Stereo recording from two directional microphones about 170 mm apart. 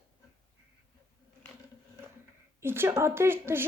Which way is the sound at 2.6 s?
15° right (ahead or behind).